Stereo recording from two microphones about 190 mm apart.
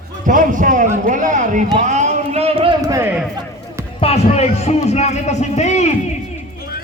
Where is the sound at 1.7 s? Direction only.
40° right (ahead or behind); by 3.1 s 15° right (ahead or behind).